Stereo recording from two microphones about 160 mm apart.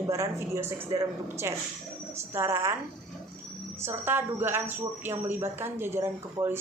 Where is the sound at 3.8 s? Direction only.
15° right (ahead or behind).